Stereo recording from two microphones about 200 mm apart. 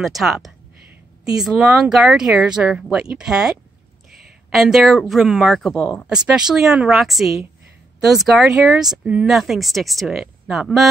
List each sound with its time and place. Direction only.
0.0 s speech: centre (ahead or behind)
4.5 s speech: centre (ahead or behind)